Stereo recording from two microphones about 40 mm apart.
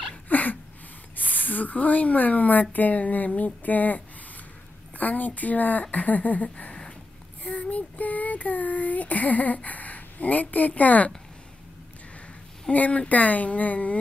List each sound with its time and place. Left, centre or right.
0.3 s a sound: left
1.1 s a woman's voice: left
4.9 s child singing: left
6.5 s a sound: left
7.4 s child singing: left
7.7 s child singing: left
12.7 s a woman's voice: left